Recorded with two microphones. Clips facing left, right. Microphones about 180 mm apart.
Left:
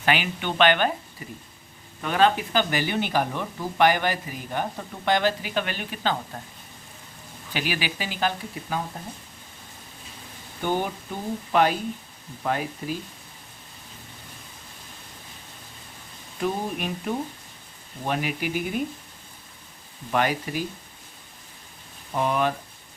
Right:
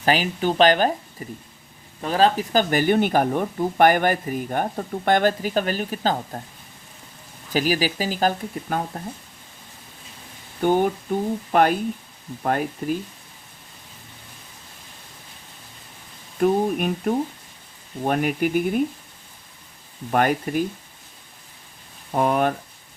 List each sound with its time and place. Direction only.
0.0 s speech: 35° right (ahead or behind)
7.5 s speech: 40° right (ahead or behind)
10.6 s speech: 50° right (ahead or behind)
16.4 s speech: 50° right (ahead or behind)
20.1 s speech: 50° right (ahead or behind)
22.1 s speech: 50° right (ahead or behind)